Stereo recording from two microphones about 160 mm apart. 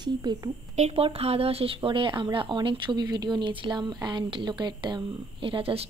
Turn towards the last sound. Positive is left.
turn(degrees=-35)  # may be behind; listen again after turning